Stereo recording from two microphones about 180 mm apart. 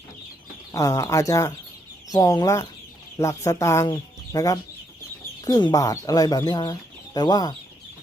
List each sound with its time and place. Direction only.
0.7 s speech: 15° left (ahead or behind)